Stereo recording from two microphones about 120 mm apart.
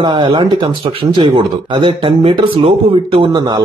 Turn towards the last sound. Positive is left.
turn(degrees=-50)  # may be behind; listen again after turning